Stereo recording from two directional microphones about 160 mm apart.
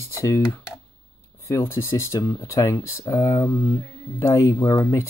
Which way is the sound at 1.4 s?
15° left (ahead or behind).